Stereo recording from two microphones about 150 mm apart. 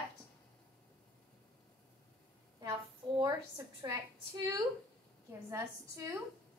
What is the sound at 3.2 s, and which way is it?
Speech, 20° right (ahead or behind).